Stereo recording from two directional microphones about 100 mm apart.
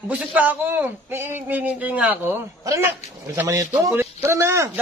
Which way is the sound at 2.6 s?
30° right (ahead or behind).